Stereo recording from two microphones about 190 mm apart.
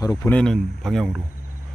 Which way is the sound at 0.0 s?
20° left (ahead or behind).